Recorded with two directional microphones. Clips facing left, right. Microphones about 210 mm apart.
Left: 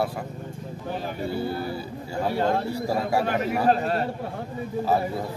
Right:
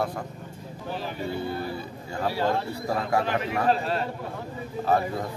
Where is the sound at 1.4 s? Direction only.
35° left (ahead or behind).